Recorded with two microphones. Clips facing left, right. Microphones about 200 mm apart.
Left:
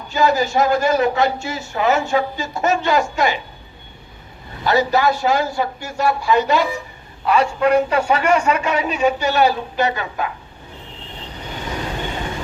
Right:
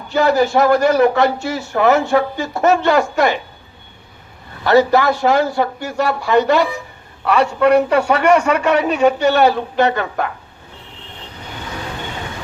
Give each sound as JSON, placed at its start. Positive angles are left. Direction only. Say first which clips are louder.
{"t": 0.1, "sound": "a man's voice", "louder": "right 3 dB", "side_deg": -60}
{"t": 4.6, "sound": "a man's voice", "louder": "right 4 dB", "side_deg": -60}